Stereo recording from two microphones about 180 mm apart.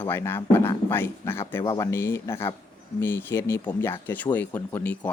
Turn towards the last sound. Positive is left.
turn(degrees=10)  # may be behind; listen again after turning